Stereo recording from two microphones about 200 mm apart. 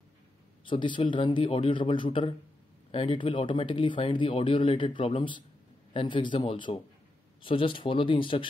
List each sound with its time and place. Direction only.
0.7 s speech: 25° left (ahead or behind)